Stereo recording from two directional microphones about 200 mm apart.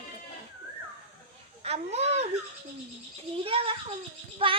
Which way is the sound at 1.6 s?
30° right (ahead or behind).